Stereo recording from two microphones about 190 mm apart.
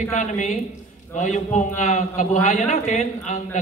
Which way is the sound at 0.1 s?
40° left (ahead or behind).